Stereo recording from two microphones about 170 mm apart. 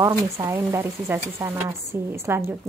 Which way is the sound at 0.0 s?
15° right (ahead or behind).